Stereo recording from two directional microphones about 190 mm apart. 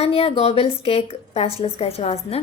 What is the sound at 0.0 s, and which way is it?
A woman's voice, 30° left (ahead or behind).